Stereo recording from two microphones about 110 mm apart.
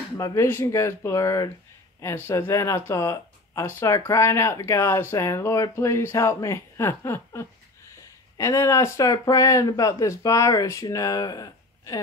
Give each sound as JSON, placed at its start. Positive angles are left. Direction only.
{"t": 0.2, "sound": "speech", "side_deg": 35}